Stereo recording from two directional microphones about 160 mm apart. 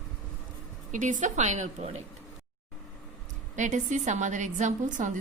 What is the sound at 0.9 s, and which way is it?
A woman's voice, 50° right (ahead or behind).